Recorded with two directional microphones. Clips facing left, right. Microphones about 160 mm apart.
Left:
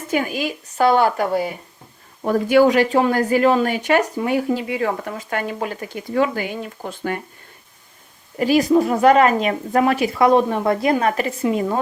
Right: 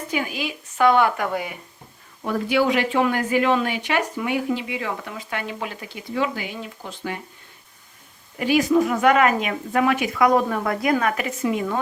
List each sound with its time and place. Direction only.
0.1 s a woman's voice: 45° left (ahead or behind)
8.4 s speech: 35° left (ahead or behind)